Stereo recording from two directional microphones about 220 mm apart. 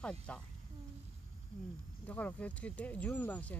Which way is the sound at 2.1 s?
5° left (ahead or behind).